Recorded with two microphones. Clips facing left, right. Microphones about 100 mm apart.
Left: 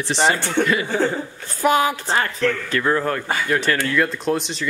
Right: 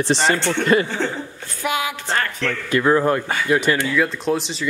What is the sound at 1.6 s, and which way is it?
Speech, 40° left (ahead or behind).